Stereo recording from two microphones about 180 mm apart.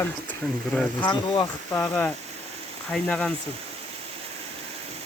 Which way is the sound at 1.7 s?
5° left (ahead or behind).